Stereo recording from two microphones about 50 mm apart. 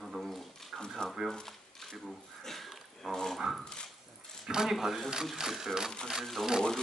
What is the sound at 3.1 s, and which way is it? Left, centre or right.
Speech, centre.